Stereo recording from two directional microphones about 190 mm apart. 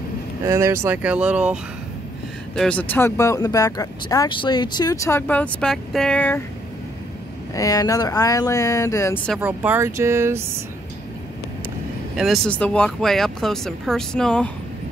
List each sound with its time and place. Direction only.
0.5 s speech: 15° right (ahead or behind)
2.5 s speech: 5° left (ahead or behind)
7.5 s speech: 20° left (ahead or behind)
9.4 s speech: 10° right (ahead or behind)
12.2 s speech: 5° left (ahead or behind)